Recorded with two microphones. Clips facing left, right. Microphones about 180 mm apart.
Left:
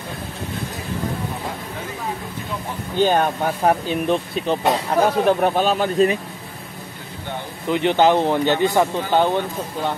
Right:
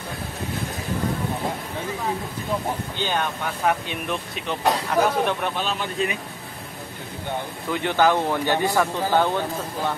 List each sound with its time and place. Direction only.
3.0 s speech: 45° left (ahead or behind)
7.6 s speech: 20° left (ahead or behind)